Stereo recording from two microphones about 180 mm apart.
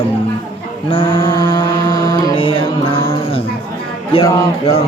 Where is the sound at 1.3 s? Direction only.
15° left (ahead or behind).